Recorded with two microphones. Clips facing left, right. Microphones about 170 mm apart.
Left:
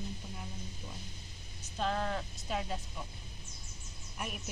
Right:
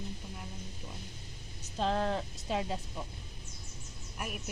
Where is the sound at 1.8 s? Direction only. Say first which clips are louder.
Right 3 dB; 30° right (ahead or behind).